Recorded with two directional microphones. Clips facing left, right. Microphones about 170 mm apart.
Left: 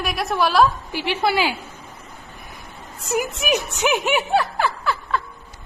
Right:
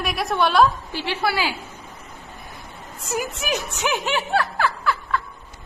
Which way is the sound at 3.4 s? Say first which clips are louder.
Left 4 dB; 20° left (ahead or behind).